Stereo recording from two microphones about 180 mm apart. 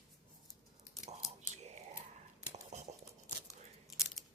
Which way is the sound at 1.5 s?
40° right (ahead or behind).